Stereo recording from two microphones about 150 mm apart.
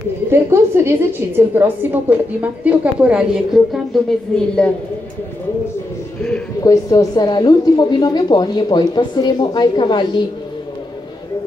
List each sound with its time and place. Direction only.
0.3 s a woman's voice: 15° right (ahead or behind); by 4.5 s 5° left (ahead or behind)
6.6 s a woman's voice: 25° left (ahead or behind)